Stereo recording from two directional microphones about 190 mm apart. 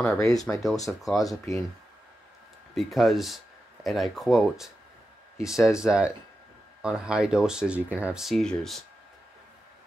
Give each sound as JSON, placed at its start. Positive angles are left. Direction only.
{"t": 0.2, "sound": "speech", "side_deg": 20}
{"t": 0.8, "sound": "speech", "side_deg": 0}
{"t": 1.2, "sound": "speech", "side_deg": 15}
{"t": 2.7, "sound": "speech", "side_deg": 0}